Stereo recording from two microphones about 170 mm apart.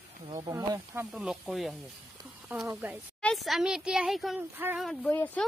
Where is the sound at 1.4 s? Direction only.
Centre (ahead or behind).